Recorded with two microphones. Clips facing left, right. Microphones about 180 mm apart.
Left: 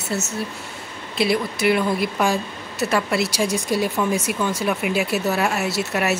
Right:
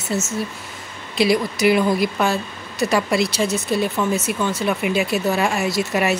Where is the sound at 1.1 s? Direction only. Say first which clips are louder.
Right 3 dB; centre (ahead or behind).